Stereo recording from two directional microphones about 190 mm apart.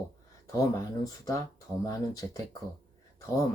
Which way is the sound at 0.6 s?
20° left (ahead or behind).